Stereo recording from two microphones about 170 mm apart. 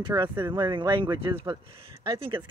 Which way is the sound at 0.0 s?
25° right (ahead or behind).